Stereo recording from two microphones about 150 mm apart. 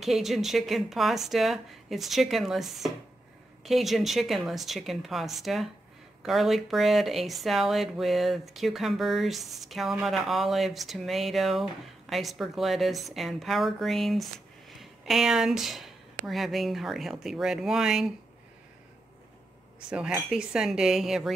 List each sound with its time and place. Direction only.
0.0 s speech: centre (ahead or behind)
20.2 s speech: 5° right (ahead or behind)